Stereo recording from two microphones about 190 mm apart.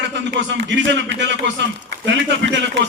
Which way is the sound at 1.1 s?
70° right (ahead or behind).